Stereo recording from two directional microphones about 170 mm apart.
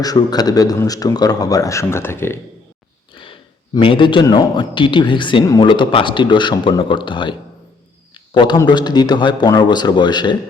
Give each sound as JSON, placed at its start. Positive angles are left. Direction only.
{"t": 0.0, "sound": "speech", "side_deg": 20}
{"t": 3.8, "sound": "speech", "side_deg": 30}